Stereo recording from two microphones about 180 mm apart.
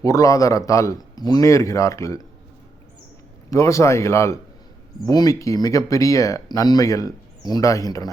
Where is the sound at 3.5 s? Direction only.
15° left (ahead or behind).